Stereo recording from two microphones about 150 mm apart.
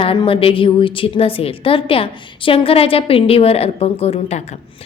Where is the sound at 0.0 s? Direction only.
35° left (ahead or behind).